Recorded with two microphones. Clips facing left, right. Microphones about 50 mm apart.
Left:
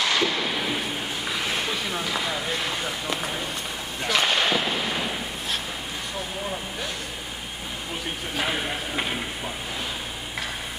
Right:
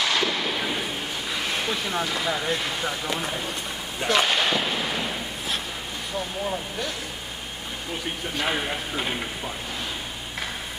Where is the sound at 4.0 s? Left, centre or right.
Centre.